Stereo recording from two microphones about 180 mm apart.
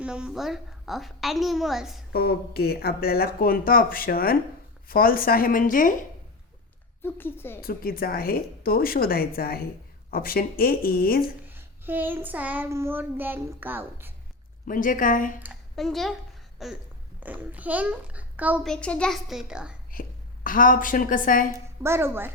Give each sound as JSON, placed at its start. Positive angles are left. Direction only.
{"t": 0.0, "sound": "a woman's voice", "side_deg": -5}
{"t": 2.1, "sound": "a woman's voice", "side_deg": 60}
{"t": 7.0, "sound": "speech", "side_deg": 10}
{"t": 7.6, "sound": "speech", "side_deg": 55}
{"t": 11.4, "sound": "child singing", "side_deg": -10}
{"t": 14.7, "sound": "a woman's voice", "side_deg": 45}
{"t": 15.7, "sound": "a woman's voice", "side_deg": 0}
{"t": 18.6, "sound": "a woman's voice", "side_deg": 5}
{"t": 19.9, "sound": "a woman's voice", "side_deg": 50}
{"t": 21.8, "sound": "child singing", "side_deg": -15}